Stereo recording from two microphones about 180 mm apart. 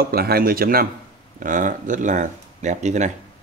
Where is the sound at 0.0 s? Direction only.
60° right (ahead or behind); by 3.1 s 40° right (ahead or behind).